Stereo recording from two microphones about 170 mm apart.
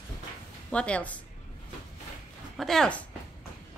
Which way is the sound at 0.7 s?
5° left (ahead or behind).